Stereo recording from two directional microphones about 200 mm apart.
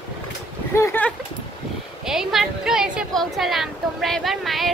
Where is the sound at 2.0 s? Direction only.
Centre (ahead or behind).